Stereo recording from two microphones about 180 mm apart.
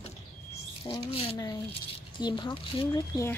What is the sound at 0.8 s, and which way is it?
Speech, 30° left (ahead or behind).